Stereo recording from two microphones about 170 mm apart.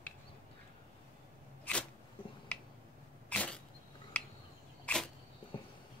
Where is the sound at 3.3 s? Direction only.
5° left (ahead or behind).